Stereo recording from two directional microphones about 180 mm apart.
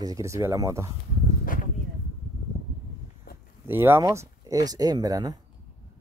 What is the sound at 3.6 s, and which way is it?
Speech, 10° right (ahead or behind).